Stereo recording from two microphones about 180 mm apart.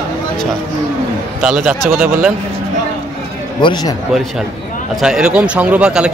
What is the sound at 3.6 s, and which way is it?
Speech, 25° left (ahead or behind).